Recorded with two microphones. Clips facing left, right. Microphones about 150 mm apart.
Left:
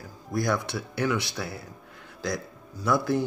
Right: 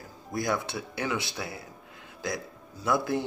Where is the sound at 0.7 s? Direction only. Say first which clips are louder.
Left 4 dB; 20° right (ahead or behind).